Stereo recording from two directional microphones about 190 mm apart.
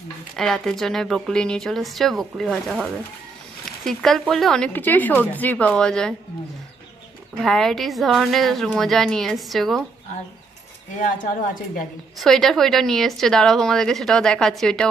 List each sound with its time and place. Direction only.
0.4 s a woman's voice: centre (ahead or behind)
7.4 s a woman's voice: centre (ahead or behind)
11.0 s a woman's voice: 45° left (ahead or behind)
12.2 s a woman's voice: centre (ahead or behind)